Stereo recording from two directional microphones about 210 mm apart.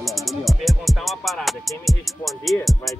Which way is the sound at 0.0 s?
Centre (ahead or behind).